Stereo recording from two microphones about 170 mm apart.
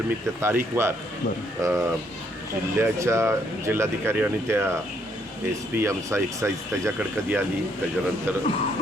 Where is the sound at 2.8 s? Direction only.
15° right (ahead or behind).